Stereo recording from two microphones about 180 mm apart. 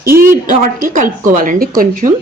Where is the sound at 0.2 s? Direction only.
50° right (ahead or behind).